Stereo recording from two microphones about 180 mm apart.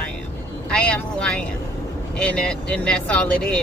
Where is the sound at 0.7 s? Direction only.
5° left (ahead or behind).